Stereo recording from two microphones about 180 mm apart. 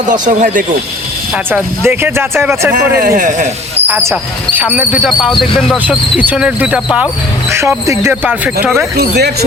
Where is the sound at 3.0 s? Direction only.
45° right (ahead or behind).